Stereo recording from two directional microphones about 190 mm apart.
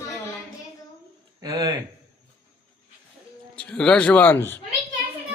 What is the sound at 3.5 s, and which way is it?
A man's voice, 5° left (ahead or behind).